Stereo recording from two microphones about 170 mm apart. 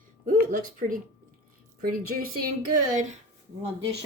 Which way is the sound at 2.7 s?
45° right (ahead or behind).